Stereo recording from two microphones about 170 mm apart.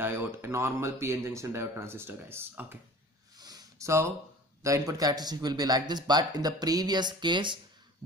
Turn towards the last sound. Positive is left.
turn(degrees=-25)  # may be behind; listen again after turning